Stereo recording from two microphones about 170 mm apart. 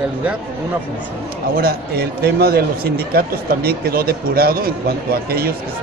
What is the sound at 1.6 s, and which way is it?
Speech, 65° right (ahead or behind).